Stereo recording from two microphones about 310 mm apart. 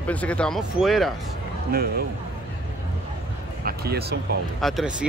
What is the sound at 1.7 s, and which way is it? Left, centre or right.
Speech, right.